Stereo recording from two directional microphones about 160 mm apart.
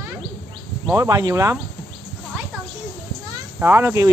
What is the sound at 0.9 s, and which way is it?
Speech, 20° right (ahead or behind).